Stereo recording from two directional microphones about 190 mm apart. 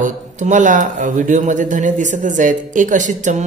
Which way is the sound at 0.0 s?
40° right (ahead or behind).